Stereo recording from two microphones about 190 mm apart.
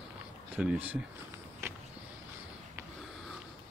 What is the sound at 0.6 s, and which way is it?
Speech, 5° right (ahead or behind).